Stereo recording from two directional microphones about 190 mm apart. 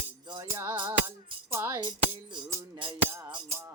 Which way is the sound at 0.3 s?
20° right (ahead or behind).